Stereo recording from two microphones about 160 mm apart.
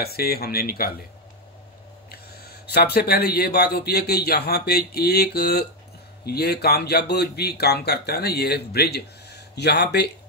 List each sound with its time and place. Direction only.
0.0 s speech: 75° left (ahead or behind)
2.0 s speech: 80° left